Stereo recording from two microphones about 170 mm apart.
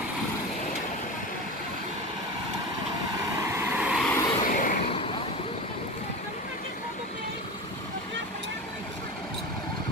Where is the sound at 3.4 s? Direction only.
15° right (ahead or behind).